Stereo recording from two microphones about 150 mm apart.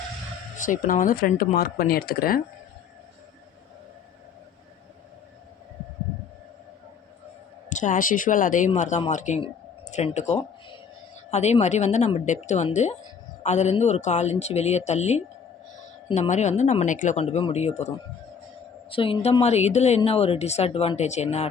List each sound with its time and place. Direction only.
0.6 s speech: 60° left (ahead or behind)
1.5 s speech: 90° left
7.7 s a woman's voice: 55° left (ahead or behind)
18.9 s speech: 35° left (ahead or behind)